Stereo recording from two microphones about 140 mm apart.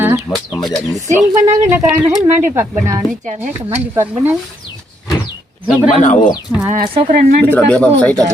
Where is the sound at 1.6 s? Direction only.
15° right (ahead or behind).